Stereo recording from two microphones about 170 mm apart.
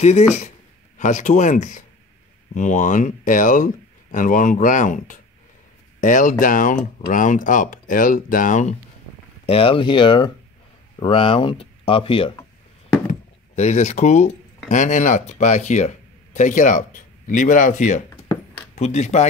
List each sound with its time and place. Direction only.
0.0 s speech: 40° left (ahead or behind)
9.5 s speech: 30° left (ahead or behind)
13.6 s speech: 40° left (ahead or behind)